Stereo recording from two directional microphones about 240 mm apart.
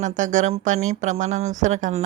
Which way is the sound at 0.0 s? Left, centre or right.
Right.